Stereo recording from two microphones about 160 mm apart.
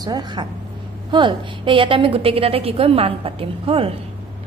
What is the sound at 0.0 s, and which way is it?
A woman's voice, 25° right (ahead or behind).